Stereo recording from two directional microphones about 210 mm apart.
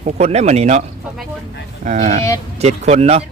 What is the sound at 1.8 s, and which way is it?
Speech, 35° right (ahead or behind).